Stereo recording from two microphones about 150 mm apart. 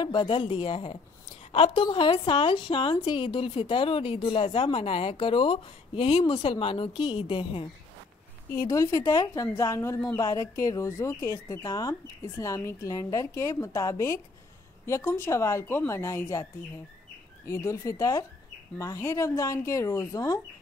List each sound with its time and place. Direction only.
0.0 s a woman's voice: 30° left (ahead or behind)
8.6 s a woman's voice: 20° left (ahead or behind)
17.5 s a woman's voice: 20° left (ahead or behind)